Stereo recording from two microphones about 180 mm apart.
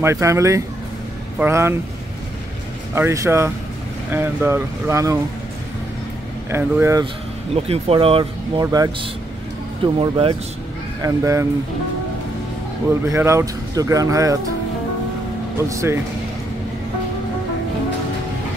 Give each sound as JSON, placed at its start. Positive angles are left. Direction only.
{"t": 0.0, "sound": "speech", "side_deg": -15}
{"t": 2.9, "sound": "speech", "side_deg": -15}
{"t": 6.5, "sound": "speech", "side_deg": -15}
{"t": 7.5, "sound": "speech", "side_deg": -35}
{"t": 8.6, "sound": "speech", "side_deg": -20}
{"t": 9.9, "sound": "speech", "side_deg": -30}
{"t": 11.0, "sound": "speech", "side_deg": -20}
{"t": 13.1, "sound": "speech", "side_deg": -15}
{"t": 15.7, "sound": "speech", "side_deg": -15}